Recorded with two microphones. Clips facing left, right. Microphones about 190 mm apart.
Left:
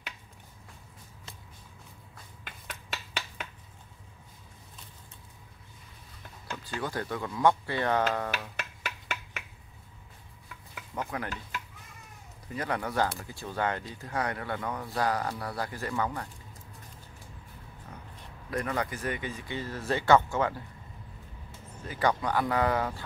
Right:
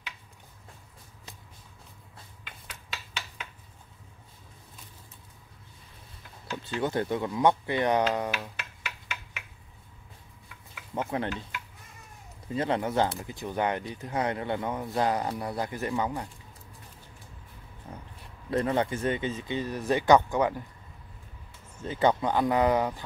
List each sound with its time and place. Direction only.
2.4 s finger snapping: 55° left (ahead or behind)
6.5 s speech: 25° right (ahead or behind)
8.8 s finger snapping: 45° left (ahead or behind)
11.0 s speech: 25° right (ahead or behind)
12.4 s speech: 25° right (ahead or behind)
18.5 s speech: 25° right (ahead or behind)
21.7 s speech: 25° right (ahead or behind)